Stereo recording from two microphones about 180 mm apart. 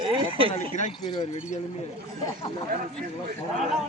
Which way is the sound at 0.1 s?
30° right (ahead or behind).